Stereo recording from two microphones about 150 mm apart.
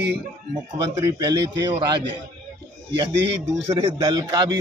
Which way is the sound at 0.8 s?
25° right (ahead or behind).